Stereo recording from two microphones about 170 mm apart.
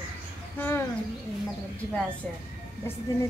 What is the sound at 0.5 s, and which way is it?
Speech, 15° left (ahead or behind).